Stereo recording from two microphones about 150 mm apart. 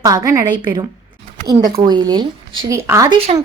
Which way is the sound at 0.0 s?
20° right (ahead or behind).